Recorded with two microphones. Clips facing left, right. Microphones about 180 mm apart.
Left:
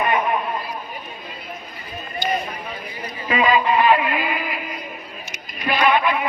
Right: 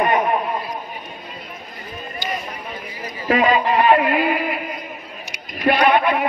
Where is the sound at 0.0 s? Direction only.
40° right (ahead or behind).